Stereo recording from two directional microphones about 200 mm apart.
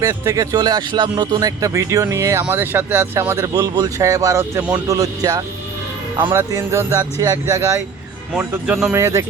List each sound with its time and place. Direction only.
0.0 s speech: 15° right (ahead or behind)